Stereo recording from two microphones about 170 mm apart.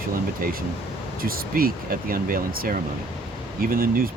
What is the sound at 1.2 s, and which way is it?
Speech, 60° right (ahead or behind).